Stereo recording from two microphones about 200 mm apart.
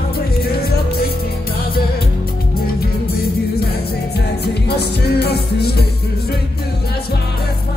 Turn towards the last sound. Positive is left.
turn(degrees=55)  # may be behind; listen again after turning